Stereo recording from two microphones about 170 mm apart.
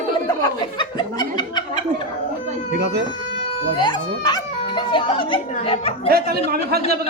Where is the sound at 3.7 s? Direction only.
25° left (ahead or behind).